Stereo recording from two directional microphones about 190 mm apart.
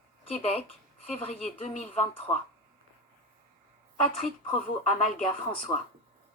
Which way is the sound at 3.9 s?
5° left (ahead or behind).